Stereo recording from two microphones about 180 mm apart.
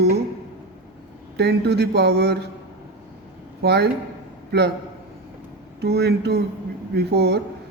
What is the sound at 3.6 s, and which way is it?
Speech, 65° right (ahead or behind).